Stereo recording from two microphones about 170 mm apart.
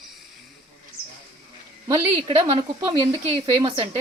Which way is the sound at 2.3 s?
30° right (ahead or behind).